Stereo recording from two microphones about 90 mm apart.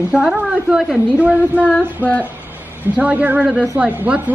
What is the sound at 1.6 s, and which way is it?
Female singing, 15° left (ahead or behind).